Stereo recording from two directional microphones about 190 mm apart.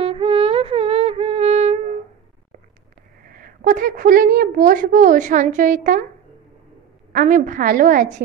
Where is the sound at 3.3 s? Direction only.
50° right (ahead or behind).